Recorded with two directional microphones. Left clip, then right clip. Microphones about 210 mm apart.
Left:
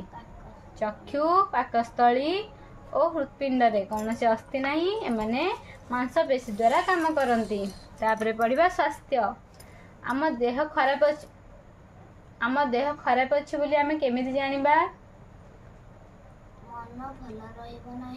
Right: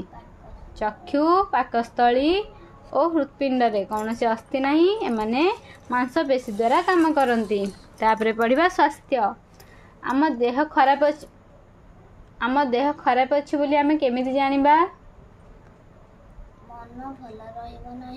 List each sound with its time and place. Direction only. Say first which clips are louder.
0.7 s speech: right 5 dB; 50° right (ahead or behind)
12.4 s speech: right 4 dB; 50° right (ahead or behind)